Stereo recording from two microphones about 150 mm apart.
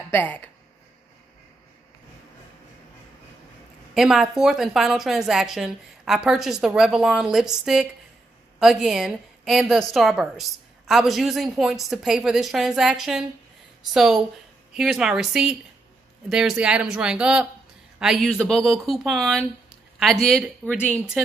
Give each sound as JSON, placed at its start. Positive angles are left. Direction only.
{"t": 0.1, "sound": "speech", "side_deg": 10}
{"t": 3.9, "sound": "a woman's voice", "side_deg": 0}